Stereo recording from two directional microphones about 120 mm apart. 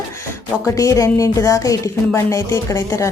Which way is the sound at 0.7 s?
25° left (ahead or behind).